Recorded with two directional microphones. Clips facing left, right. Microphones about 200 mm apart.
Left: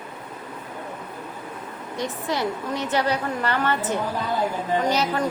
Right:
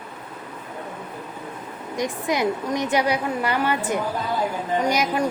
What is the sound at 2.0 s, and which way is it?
A woman's voice, 15° right (ahead or behind).